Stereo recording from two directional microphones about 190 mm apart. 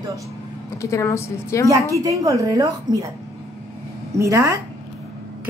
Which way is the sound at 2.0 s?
15° right (ahead or behind).